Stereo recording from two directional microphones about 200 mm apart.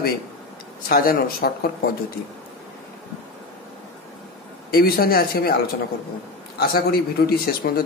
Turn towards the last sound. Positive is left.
turn(degrees=50)  # may be behind; listen again after turning